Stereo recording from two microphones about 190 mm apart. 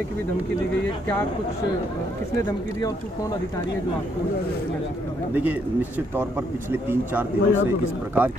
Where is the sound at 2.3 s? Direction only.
15° left (ahead or behind).